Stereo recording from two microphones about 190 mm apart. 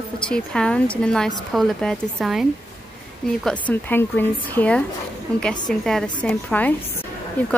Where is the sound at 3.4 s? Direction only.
10° left (ahead or behind).